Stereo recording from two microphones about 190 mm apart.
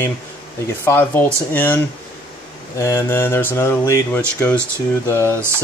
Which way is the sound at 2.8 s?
15° left (ahead or behind).